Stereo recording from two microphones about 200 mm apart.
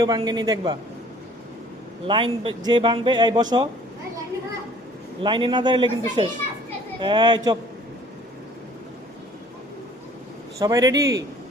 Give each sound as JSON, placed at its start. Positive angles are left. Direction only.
{"t": 0.0, "sound": "speech", "side_deg": -20}
{"t": 2.0, "sound": "speech", "side_deg": -25}
{"t": 5.2, "sound": "speech", "side_deg": -25}
{"t": 10.6, "sound": "speech", "side_deg": -20}